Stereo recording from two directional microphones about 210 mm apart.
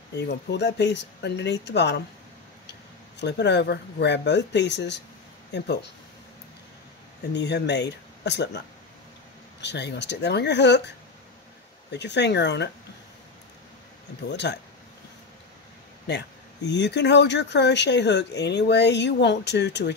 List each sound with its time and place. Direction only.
0.3 s speech: 55° left (ahead or behind)
3.2 s speech: 55° left (ahead or behind)
7.3 s speech: 55° left (ahead or behind)
9.6 s speech: 55° left (ahead or behind)
11.9 s speech: 55° left (ahead or behind)
14.3 s speech: 55° left (ahead or behind)
16.1 s speech: 55° left (ahead or behind)